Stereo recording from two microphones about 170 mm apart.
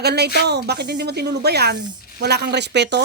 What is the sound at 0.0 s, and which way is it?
Speech, 70° right (ahead or behind).